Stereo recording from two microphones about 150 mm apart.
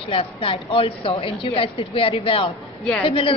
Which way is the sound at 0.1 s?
40° left (ahead or behind).